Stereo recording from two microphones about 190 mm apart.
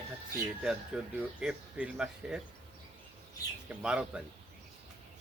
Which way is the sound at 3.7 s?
5° right (ahead or behind).